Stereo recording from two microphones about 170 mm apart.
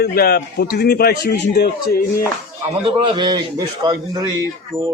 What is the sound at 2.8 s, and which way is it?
A man's voice, 30° right (ahead or behind).